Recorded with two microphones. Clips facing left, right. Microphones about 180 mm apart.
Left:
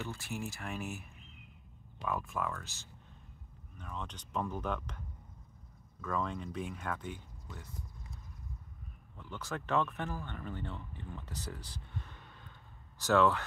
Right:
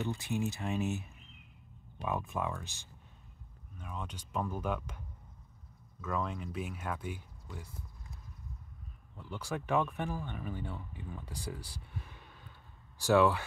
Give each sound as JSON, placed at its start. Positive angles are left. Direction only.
{"t": 0.0, "sound": "speech", "side_deg": -20}
{"t": 9.1, "sound": "speech", "side_deg": -10}